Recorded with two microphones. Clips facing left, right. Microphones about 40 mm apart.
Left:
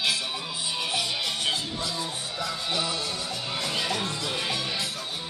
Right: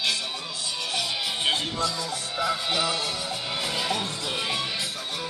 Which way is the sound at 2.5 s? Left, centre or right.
Right.